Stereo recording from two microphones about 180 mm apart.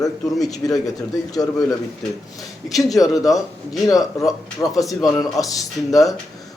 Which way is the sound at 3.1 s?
20° left (ahead or behind).